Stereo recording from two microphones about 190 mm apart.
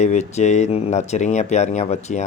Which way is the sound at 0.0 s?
35° left (ahead or behind).